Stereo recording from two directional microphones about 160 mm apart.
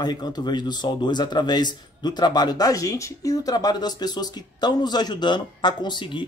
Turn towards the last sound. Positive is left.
turn(degrees=30)  # may be behind; listen again after turning